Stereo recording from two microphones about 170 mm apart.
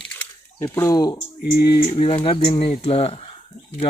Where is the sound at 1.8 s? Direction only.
40° left (ahead or behind).